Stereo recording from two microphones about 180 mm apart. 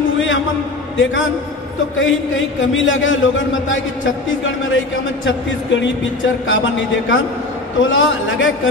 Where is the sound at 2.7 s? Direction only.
90° left.